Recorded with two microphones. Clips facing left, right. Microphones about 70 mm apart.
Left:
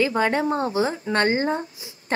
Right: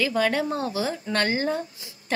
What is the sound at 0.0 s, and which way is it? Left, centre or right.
A woman's voice, left.